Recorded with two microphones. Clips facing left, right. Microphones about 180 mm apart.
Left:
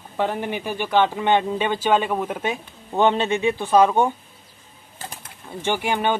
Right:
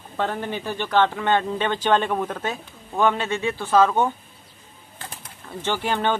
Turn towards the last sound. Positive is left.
turn(degrees=10)  # may be behind; listen again after turning